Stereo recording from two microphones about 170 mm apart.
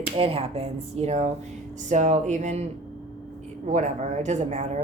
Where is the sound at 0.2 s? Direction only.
35° right (ahead or behind).